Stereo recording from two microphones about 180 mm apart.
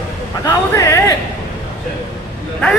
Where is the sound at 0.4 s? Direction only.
15° left (ahead or behind).